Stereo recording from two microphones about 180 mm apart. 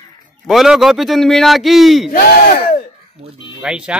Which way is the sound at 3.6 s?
5° right (ahead or behind).